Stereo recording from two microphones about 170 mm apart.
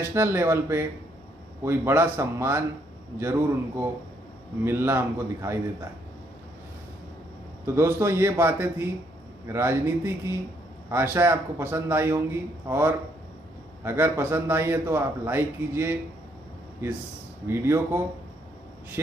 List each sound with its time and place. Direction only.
0.0 s a man's voice: 15° right (ahead or behind)
7.6 s a man's voice: 15° right (ahead or behind)
17.5 s a man's voice: 15° right (ahead or behind)